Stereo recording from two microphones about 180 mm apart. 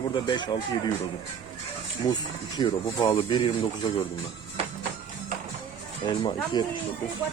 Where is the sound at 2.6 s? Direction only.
25° left (ahead or behind).